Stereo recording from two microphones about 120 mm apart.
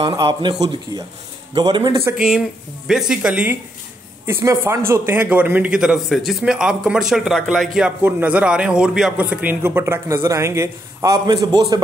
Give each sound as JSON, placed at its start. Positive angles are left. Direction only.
{"t": 0.0, "sound": "a man's voice", "side_deg": -45}
{"t": 2.1, "sound": "speech", "side_deg": -5}
{"t": 4.3, "sound": "a man's voice", "side_deg": -20}
{"t": 8.0, "sound": "a man's voice", "side_deg": -10}